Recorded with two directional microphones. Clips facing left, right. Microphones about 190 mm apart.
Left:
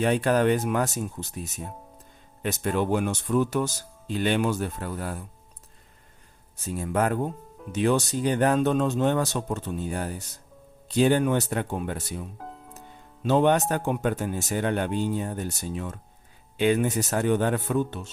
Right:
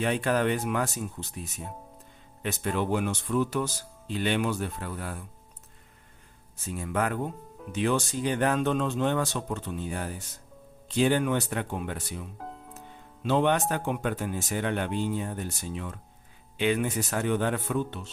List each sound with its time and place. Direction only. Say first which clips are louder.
0.0 s speech: left 4 dB; 40° left (ahead or behind)
2.4 s speech: left 3 dB; 45° left (ahead or behind)
6.7 s speech: left 4 dB; 40° left (ahead or behind)
12.4 s music: even; centre (ahead or behind)
13.2 s speech: left 3 dB; 45° left (ahead or behind)